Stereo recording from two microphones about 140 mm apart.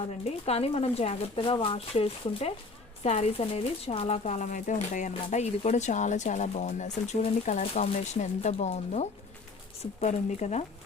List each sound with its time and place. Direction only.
0.0 s speech: 45° left (ahead or behind)